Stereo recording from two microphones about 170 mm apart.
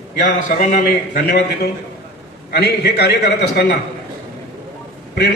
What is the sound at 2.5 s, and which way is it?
A man's voice, 75° left (ahead or behind).